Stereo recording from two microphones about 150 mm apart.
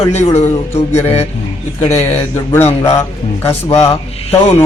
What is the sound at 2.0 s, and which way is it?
Speech, 15° left (ahead or behind).